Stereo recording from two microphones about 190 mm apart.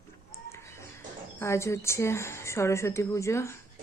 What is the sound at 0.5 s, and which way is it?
Bird, 15° left (ahead or behind).